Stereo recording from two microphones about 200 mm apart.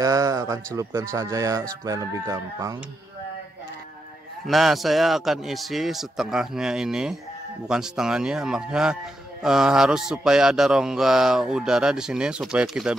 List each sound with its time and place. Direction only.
0.0 s a sound: 15° right (ahead or behind)
0.7 s speech: 15° right (ahead or behind)
4.5 s mantra: centre (ahead or behind)